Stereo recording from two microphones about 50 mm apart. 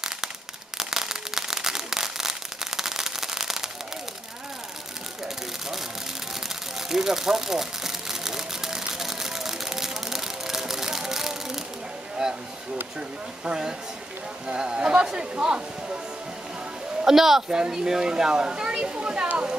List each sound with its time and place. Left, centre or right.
0.7 s fireworks: centre
6.9 s a sound: centre
13.4 s speech: centre
17.0 s speech: centre